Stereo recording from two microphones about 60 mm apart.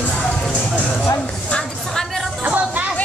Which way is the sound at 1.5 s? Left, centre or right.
Centre.